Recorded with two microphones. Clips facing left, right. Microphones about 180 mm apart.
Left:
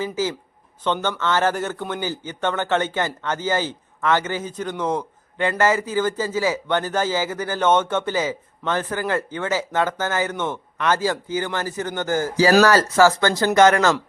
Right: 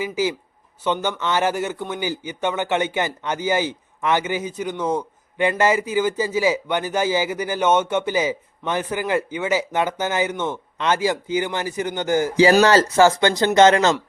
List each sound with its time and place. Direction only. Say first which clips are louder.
0.0 s speech: right 1 dB; 15° right (ahead or behind)